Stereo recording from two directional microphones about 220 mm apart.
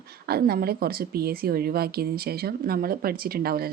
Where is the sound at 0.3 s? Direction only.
45° right (ahead or behind).